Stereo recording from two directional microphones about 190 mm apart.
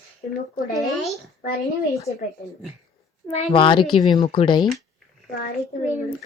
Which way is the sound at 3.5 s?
25° left (ahead or behind).